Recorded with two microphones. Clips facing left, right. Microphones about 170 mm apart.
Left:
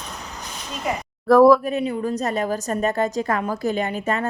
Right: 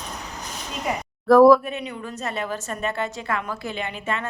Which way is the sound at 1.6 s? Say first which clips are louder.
Left 8 dB; 35° left (ahead or behind).